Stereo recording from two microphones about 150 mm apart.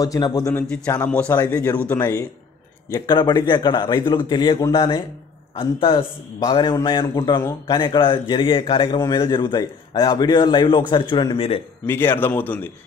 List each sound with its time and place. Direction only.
0.0 s a man's voice: 25° left (ahead or behind)
0.9 s a man's voice: 10° left (ahead or behind)
2.9 s a man's voice: 30° left (ahead or behind)
11.8 s a man's voice: 15° left (ahead or behind)